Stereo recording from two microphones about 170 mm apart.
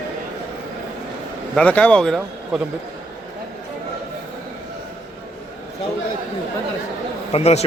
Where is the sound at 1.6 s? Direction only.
5° left (ahead or behind).